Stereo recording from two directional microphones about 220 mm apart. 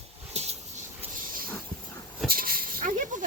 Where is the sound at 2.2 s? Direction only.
40° right (ahead or behind).